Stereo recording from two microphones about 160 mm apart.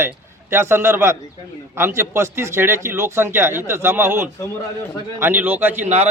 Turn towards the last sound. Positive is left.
turn(degrees=-40)  # may be behind; listen again after turning